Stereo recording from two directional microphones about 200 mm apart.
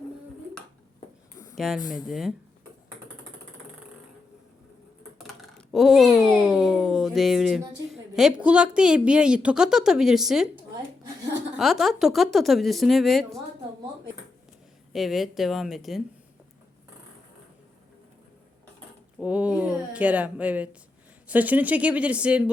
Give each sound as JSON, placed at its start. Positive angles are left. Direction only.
{"t": 1.5, "sound": "a woman's voice", "side_deg": 0}
{"t": 1.8, "sound": "speech", "side_deg": 20}
{"t": 2.0, "sound": "a woman's voice", "side_deg": 0}
{"t": 5.1, "sound": "typing", "side_deg": 0}
{"t": 7.9, "sound": "a woman's voice", "side_deg": 0}
{"t": 14.9, "sound": "a woman's voice", "side_deg": 0}
{"t": 19.2, "sound": "speech", "side_deg": -5}